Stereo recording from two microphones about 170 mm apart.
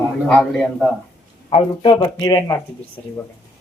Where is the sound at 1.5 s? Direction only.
30° left (ahead or behind).